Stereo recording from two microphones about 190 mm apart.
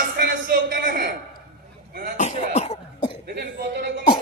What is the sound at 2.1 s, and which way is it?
Cough, 35° left (ahead or behind).